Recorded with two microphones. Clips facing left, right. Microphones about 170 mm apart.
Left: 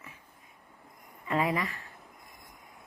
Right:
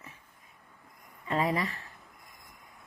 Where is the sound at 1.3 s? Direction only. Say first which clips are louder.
Even; 35° right (ahead or behind).